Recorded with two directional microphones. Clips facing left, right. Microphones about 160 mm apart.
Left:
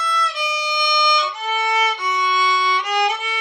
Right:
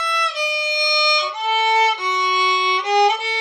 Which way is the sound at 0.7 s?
20° right (ahead or behind).